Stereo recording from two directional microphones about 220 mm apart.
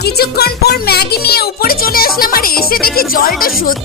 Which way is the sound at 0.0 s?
45° left (ahead or behind).